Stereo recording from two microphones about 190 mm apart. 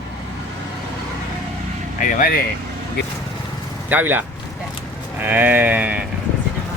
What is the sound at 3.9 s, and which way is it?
Speech, 10° right (ahead or behind).